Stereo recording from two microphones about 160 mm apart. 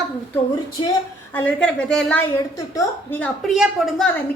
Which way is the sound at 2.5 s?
20° left (ahead or behind).